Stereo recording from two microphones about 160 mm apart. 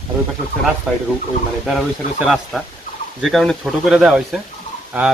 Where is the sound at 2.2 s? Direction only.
Centre (ahead or behind).